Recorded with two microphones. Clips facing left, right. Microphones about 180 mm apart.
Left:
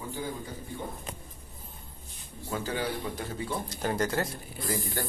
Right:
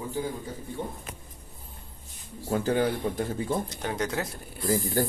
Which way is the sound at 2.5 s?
50° right (ahead or behind).